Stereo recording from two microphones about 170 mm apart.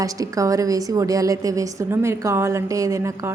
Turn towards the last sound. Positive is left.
turn(degrees=-20)  # may be behind; listen again after turning